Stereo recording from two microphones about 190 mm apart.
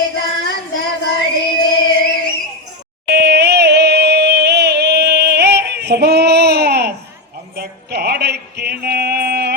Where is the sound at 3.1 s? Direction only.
55° right (ahead or behind).